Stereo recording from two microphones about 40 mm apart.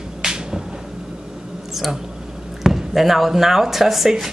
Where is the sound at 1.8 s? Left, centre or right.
Centre.